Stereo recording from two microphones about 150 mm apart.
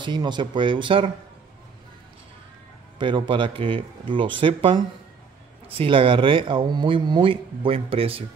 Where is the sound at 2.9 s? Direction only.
30° right (ahead or behind).